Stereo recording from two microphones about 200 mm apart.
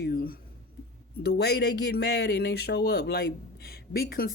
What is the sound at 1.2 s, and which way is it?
Speech, 55° left (ahead or behind).